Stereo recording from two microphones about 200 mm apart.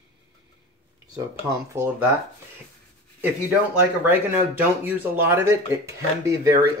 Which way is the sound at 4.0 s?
10° right (ahead or behind).